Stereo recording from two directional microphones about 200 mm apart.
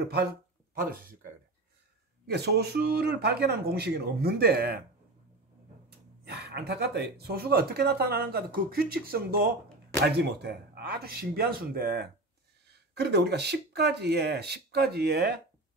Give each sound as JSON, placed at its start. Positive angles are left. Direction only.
{"t": 2.2, "sound": "speech", "side_deg": -55}
{"t": 5.9, "sound": "speech", "side_deg": -55}